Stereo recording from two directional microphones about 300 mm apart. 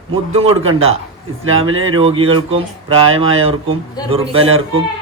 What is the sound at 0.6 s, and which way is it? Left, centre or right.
A man's voice, right.